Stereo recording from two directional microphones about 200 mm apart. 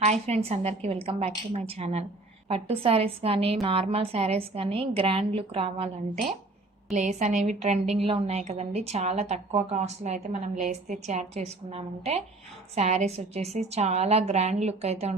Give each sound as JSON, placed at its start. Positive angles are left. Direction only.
{"t": 0.0, "sound": "a woman's voice", "side_deg": -35}